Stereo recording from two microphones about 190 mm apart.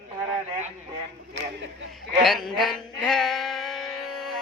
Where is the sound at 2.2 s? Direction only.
Centre (ahead or behind).